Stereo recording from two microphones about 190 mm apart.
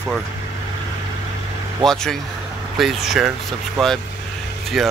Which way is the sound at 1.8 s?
5° left (ahead or behind).